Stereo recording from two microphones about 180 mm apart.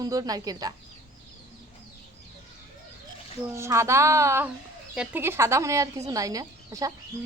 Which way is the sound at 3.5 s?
15° right (ahead or behind).